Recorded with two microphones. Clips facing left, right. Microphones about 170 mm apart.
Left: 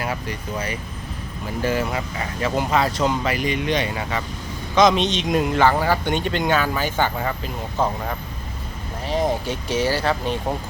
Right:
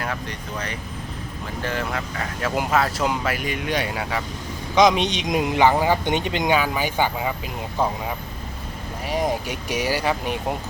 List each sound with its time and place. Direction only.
0.0 s speech: 5° left (ahead or behind)
4.7 s speech: 15° right (ahead or behind)